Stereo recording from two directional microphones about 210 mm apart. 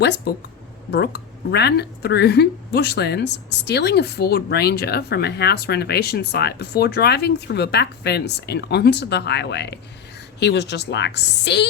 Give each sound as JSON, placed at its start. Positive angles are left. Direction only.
{"t": 0.3, "sound": "a woman's voice", "side_deg": 50}